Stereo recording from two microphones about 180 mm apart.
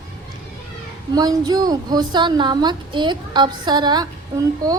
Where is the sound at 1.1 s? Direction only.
20° right (ahead or behind).